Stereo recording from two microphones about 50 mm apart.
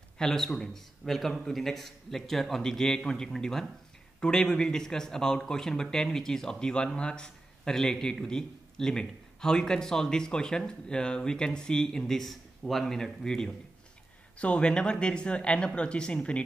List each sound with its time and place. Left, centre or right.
0.2 s a man's voice: centre
13.0 s a man's voice: centre